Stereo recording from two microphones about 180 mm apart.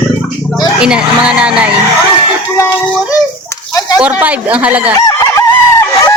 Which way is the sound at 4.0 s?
5° right (ahead or behind).